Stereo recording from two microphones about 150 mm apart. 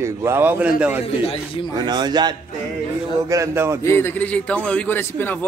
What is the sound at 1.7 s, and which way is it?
Speech, 30° right (ahead or behind).